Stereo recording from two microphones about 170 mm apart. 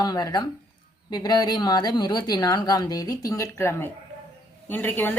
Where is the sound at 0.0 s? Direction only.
25° left (ahead or behind).